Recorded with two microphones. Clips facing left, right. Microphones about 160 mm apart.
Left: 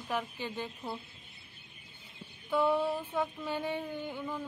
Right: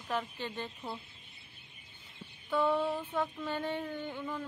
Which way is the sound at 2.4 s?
10° left (ahead or behind).